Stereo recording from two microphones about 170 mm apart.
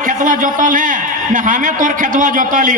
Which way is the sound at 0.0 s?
50° right (ahead or behind).